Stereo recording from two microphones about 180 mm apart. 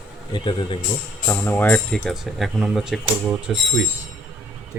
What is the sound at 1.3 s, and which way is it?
Cutlery, 10° left (ahead or behind).